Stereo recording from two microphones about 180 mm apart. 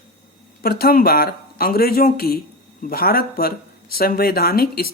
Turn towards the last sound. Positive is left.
turn(degrees=55)  # may be behind; listen again after turning